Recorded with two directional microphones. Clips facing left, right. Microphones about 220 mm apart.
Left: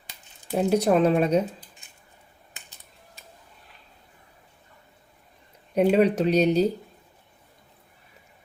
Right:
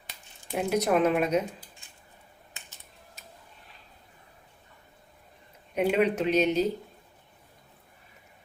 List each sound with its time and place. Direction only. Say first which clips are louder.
0.5 s speech: left 4 dB; 30° left (ahead or behind)
5.7 s speech: left 5 dB; 35° left (ahead or behind)